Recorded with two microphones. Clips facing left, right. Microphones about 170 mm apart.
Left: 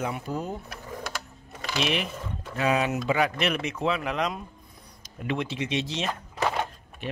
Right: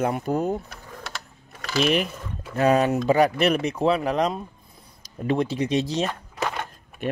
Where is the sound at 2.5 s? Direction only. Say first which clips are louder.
Right 6 dB; 45° right (ahead or behind).